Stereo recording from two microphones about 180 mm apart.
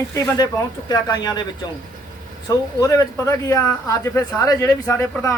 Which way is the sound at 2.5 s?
20° left (ahead or behind).